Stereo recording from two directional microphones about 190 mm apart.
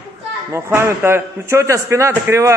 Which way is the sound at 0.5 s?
15° right (ahead or behind).